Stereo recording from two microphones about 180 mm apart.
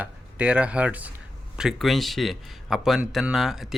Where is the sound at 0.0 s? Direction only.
5° right (ahead or behind).